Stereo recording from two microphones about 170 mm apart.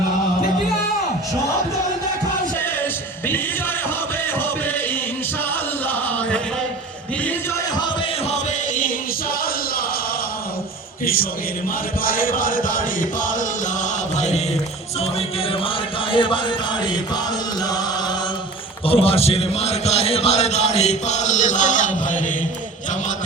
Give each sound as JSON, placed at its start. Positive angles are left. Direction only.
{"t": 5.9, "sound": "chant", "side_deg": 10}
{"t": 8.3, "sound": "music", "side_deg": 50}
{"t": 11.0, "sound": "a sound", "side_deg": 60}
{"t": 12.0, "sound": "music", "side_deg": 55}
{"t": 16.1, "sound": "music", "side_deg": 30}
{"t": 18.9, "sound": "a man's voice", "side_deg": 35}